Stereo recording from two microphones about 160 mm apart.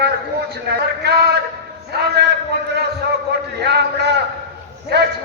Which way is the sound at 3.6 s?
90° right.